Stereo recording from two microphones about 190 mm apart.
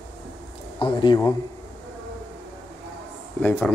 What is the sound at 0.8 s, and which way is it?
Speech, 25° left (ahead or behind).